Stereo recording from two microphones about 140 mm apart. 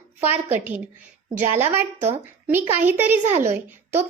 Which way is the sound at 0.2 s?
15° right (ahead or behind).